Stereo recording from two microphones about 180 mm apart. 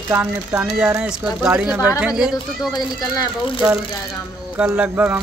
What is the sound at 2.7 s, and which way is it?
Speech, 20° left (ahead or behind).